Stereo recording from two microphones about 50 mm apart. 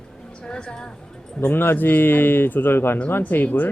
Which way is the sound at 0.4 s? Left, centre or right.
Centre.